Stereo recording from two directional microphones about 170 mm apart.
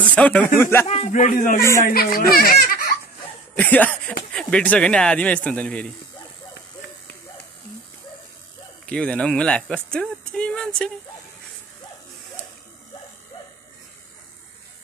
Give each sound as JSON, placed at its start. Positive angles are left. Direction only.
{"t": 0.0, "sound": "speech", "side_deg": 5}
{"t": 0.8, "sound": "speech", "side_deg": 40}
{"t": 1.6, "sound": "speech", "side_deg": 15}
{"t": 2.1, "sound": "speech", "side_deg": 60}
{"t": 3.5, "sound": "speech", "side_deg": 10}
{"t": 8.8, "sound": "speech", "side_deg": 5}